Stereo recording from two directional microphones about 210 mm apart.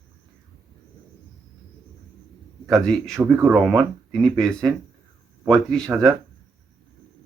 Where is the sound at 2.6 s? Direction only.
5° left (ahead or behind).